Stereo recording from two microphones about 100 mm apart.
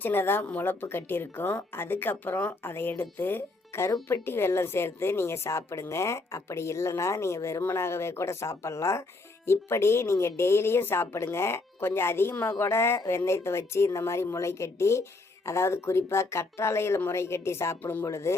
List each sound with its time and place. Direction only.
0.0 s a woman's voice: 20° left (ahead or behind)